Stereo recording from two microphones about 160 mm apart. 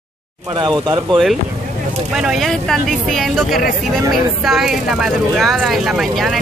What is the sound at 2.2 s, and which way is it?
Speech, centre (ahead or behind).